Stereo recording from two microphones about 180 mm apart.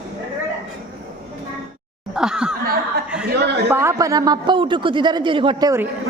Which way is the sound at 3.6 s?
15° right (ahead or behind).